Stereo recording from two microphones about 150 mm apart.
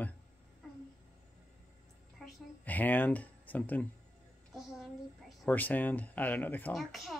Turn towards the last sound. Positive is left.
turn(degrees=10)  # may be behind; listen again after turning